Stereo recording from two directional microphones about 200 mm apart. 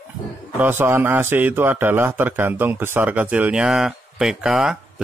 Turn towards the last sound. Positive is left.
turn(degrees=-5)  # may be behind; listen again after turning